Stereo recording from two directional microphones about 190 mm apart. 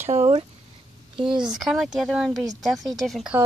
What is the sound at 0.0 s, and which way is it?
Speech, 35° right (ahead or behind).